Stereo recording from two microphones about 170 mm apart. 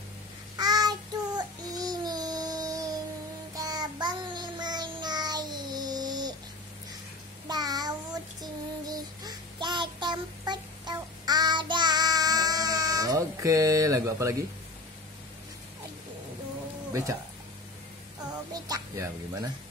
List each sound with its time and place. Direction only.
0.6 s child singing: 25° right (ahead or behind)
7.4 s child singing: 25° right (ahead or behind)
16.9 s speech: 20° right (ahead or behind)
18.5 s music: 20° right (ahead or behind)